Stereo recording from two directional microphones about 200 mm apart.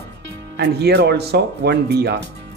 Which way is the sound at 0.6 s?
55° right (ahead or behind).